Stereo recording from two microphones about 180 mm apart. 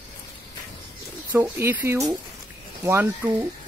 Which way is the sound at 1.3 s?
10° right (ahead or behind).